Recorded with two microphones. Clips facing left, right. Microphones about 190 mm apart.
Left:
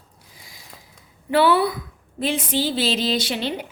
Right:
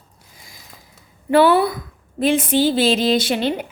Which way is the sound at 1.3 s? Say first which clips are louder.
Right 4 dB; 45° right (ahead or behind).